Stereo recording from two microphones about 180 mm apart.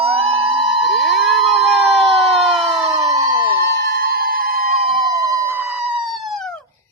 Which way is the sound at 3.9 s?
55° right (ahead or behind).